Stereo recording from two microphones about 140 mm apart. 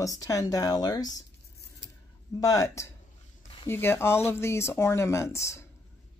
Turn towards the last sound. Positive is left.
turn(degrees=20)  # may be behind; listen again after turning